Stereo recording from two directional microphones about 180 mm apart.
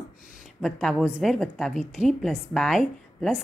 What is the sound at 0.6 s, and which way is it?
A woman's voice, centre (ahead or behind).